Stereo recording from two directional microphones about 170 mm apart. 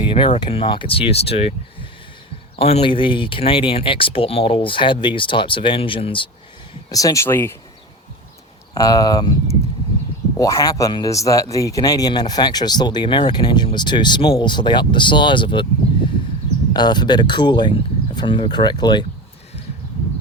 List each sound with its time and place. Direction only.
0.1 s speech: 30° left (ahead or behind)
6.9 s speech: 20° left (ahead or behind)
8.7 s a man's voice: 20° left (ahead or behind)
10.3 s a man's voice: 20° left (ahead or behind)
16.7 s a man's voice: 25° left (ahead or behind)